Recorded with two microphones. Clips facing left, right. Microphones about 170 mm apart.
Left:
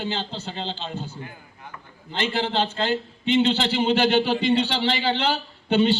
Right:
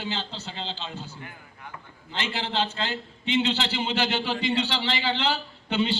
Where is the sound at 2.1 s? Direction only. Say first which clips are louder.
Left 5 dB; 55° left (ahead or behind).